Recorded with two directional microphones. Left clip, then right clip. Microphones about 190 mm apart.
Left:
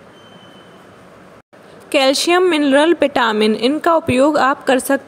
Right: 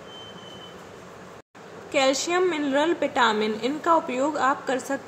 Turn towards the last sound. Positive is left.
turn(degrees=45)  # may be behind; listen again after turning